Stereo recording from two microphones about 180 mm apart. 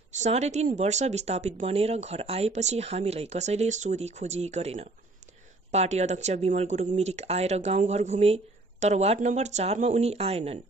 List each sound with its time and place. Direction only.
0.1 s speech: 40° right (ahead or behind)